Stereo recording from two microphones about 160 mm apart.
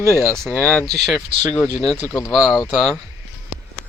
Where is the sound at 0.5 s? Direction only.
10° left (ahead or behind).